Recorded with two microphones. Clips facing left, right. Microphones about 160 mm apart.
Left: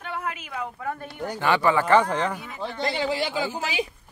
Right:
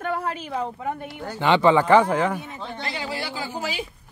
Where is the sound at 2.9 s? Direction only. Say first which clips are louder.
Left 6 dB; 25° left (ahead or behind).